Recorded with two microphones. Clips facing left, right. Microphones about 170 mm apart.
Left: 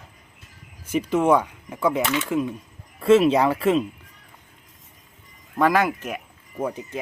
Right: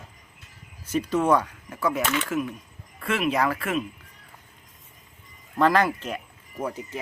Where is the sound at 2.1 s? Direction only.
25° left (ahead or behind).